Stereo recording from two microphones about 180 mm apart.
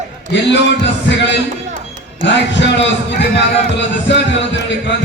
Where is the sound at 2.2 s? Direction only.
80° left.